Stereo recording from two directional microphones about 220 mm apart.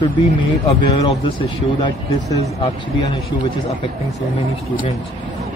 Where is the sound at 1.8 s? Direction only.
20° left (ahead or behind).